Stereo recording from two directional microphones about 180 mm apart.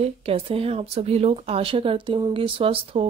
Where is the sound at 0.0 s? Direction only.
30° right (ahead or behind).